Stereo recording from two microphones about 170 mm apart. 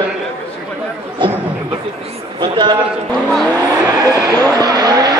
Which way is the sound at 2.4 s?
25° right (ahead or behind).